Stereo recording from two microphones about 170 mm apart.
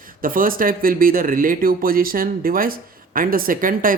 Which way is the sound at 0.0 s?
55° right (ahead or behind).